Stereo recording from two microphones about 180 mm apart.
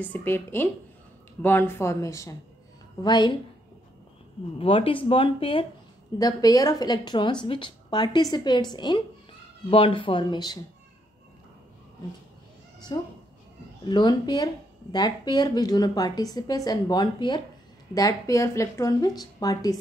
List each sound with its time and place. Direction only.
0.0 s speech: 10° left (ahead or behind)
4.6 s speech: 30° left (ahead or behind)
12.9 s speech: 25° left (ahead or behind)